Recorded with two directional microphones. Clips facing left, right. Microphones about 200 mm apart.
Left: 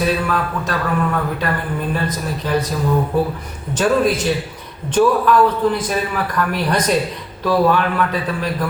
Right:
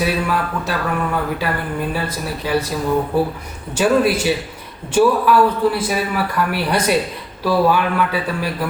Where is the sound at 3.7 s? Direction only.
10° right (ahead or behind).